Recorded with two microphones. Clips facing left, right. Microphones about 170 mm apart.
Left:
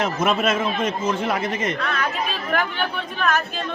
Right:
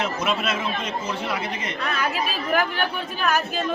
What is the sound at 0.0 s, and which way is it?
Speech, 50° left (ahead or behind).